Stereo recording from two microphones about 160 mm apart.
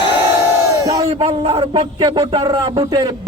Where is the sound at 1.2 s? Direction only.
35° right (ahead or behind).